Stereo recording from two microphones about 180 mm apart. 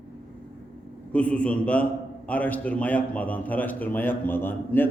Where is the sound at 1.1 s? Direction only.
5° left (ahead or behind).